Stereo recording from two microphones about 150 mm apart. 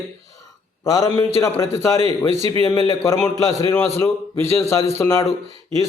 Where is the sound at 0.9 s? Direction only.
25° left (ahead or behind).